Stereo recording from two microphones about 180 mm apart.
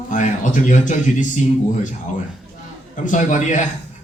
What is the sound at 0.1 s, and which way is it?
Speech, 45° left (ahead or behind).